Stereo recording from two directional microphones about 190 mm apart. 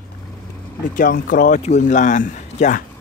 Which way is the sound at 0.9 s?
45° left (ahead or behind).